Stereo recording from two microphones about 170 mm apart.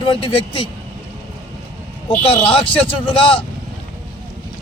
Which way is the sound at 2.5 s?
30° left (ahead or behind).